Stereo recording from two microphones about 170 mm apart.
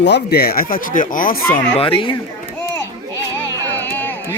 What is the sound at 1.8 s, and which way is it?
Speech, 30° left (ahead or behind).